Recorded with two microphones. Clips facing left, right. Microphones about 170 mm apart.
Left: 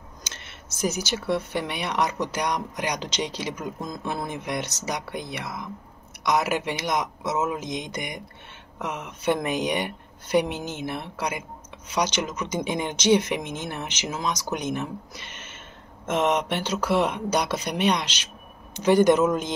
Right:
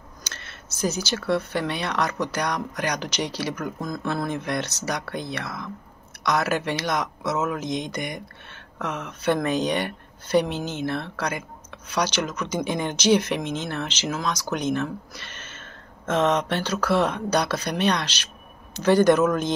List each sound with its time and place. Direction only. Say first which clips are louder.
0.2 s speech: right 2 dB; 20° left (ahead or behind)